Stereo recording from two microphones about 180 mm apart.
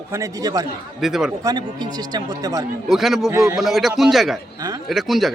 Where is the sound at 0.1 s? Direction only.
20° right (ahead or behind).